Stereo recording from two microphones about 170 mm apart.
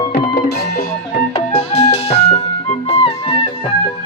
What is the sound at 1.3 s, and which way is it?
Music, 40° left (ahead or behind).